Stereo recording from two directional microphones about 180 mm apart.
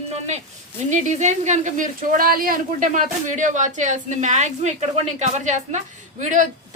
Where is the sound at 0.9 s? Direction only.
40° right (ahead or behind).